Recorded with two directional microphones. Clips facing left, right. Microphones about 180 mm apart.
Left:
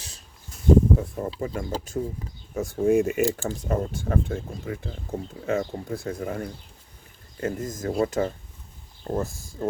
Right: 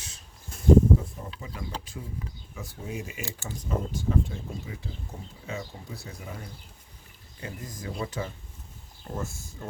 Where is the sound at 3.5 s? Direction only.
60° left (ahead or behind).